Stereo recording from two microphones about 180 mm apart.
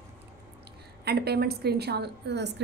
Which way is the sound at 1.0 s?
60° right (ahead or behind).